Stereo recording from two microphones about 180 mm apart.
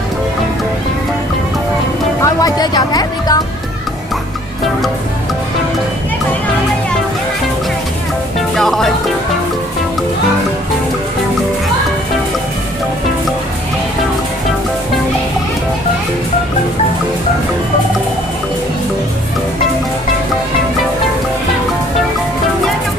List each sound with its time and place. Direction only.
2.2 s vehicle: 20° left (ahead or behind)
8.5 s music: centre (ahead or behind)